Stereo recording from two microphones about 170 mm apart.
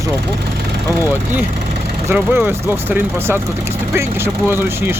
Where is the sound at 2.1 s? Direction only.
10° right (ahead or behind).